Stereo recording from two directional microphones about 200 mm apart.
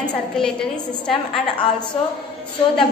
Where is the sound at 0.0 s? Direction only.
5° left (ahead or behind).